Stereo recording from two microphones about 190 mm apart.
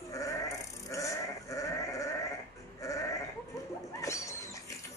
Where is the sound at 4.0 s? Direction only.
15° left (ahead or behind).